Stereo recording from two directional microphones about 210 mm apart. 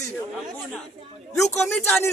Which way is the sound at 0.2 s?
10° left (ahead or behind).